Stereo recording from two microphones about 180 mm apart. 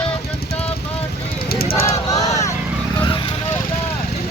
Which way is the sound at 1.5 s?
55° left (ahead or behind).